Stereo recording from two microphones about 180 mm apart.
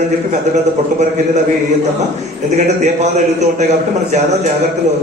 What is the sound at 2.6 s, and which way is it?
Speech, 40° right (ahead or behind).